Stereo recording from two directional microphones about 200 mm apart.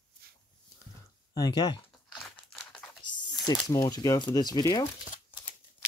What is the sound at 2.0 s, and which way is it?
Crumpling, centre (ahead or behind).